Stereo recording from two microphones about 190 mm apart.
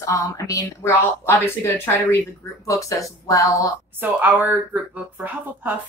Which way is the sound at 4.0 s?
10° right (ahead or behind).